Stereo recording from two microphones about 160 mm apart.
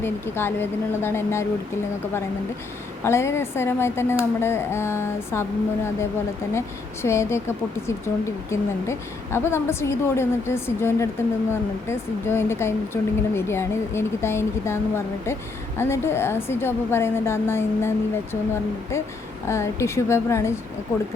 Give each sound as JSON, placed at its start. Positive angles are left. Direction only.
{"t": 0.0, "sound": "speech", "side_deg": 15}
{"t": 3.0, "sound": "speech", "side_deg": 15}
{"t": 19.5, "sound": "speech", "side_deg": 15}